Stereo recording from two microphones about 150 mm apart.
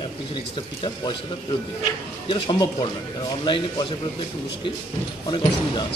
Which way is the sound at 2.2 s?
35° left (ahead or behind).